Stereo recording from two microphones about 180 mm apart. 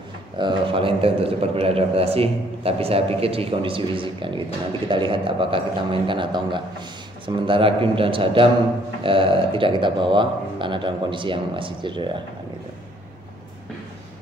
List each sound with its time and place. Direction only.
0.4 s a man's voice: 30° right (ahead or behind)